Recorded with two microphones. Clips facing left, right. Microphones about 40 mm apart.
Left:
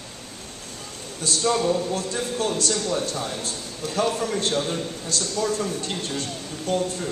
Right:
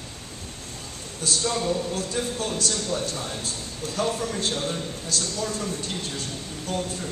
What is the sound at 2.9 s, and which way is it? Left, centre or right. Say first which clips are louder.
Speech: left 3 dB; left.